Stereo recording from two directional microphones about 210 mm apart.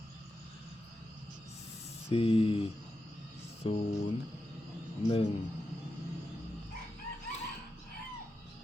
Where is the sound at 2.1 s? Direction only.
30° left (ahead or behind).